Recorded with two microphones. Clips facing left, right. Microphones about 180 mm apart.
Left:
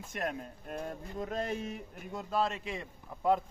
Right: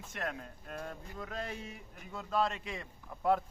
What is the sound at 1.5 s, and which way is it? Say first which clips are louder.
Speech: left 7 dB; 60° left (ahead or behind).